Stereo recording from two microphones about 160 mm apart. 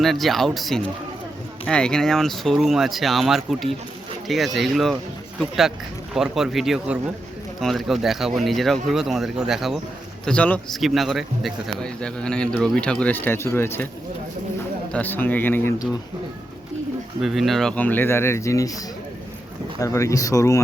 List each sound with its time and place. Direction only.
0.0 s speech: centre (ahead or behind)
14.9 s speech: 10° left (ahead or behind)
17.2 s speech: centre (ahead or behind); by 18.7 s 20° left (ahead or behind)
19.8 s speech: 20° left (ahead or behind)